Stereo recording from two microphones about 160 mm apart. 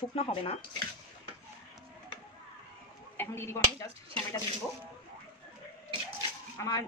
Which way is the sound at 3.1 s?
15° left (ahead or behind).